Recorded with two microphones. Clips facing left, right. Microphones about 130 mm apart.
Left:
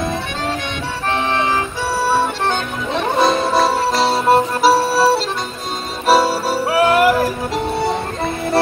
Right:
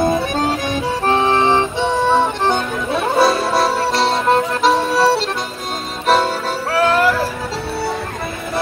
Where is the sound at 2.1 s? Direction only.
20° right (ahead or behind).